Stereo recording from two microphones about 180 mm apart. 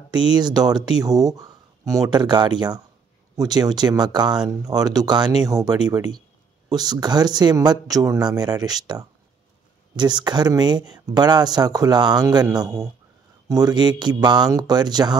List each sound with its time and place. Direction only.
0.1 s speech: 25° right (ahead or behind)